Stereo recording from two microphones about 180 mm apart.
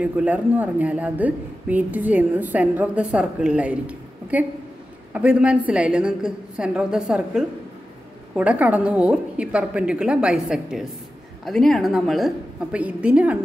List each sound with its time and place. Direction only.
0.0 s a woman's voice: 10° right (ahead or behind)